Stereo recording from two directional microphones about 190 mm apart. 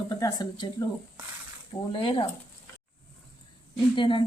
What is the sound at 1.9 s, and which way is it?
Speech, 30° left (ahead or behind).